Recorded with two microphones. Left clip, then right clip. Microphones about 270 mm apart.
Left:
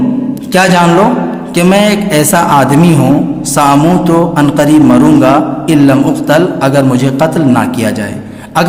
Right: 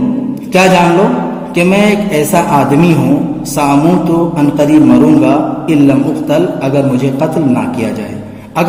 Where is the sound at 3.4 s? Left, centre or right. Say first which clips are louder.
Left 3 dB; left.